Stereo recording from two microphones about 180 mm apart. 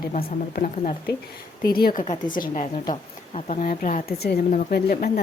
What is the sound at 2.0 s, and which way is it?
A woman's voice, 45° left (ahead or behind).